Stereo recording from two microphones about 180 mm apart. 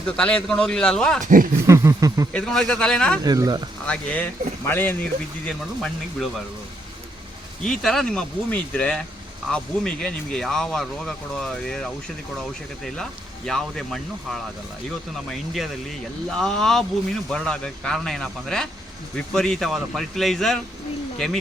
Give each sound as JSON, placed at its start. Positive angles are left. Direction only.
{"t": 0.0, "sound": "speech", "side_deg": 5}
{"t": 1.2, "sound": "speech", "side_deg": -50}
{"t": 1.6, "sound": "a sound", "side_deg": -15}
{"t": 2.3, "sound": "speech", "side_deg": 0}
{"t": 3.2, "sound": "speech", "side_deg": -20}
{"t": 3.8, "sound": "speech", "side_deg": 10}
{"t": 7.6, "sound": "speech", "side_deg": 5}